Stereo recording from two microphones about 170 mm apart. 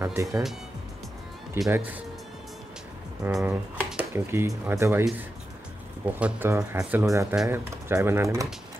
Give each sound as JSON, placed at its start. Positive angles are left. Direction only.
{"t": 0.0, "sound": "speech", "side_deg": -15}
{"t": 1.6, "sound": "speech", "side_deg": -15}
{"t": 3.3, "sound": "speech", "side_deg": -5}
{"t": 6.1, "sound": "speech", "side_deg": -10}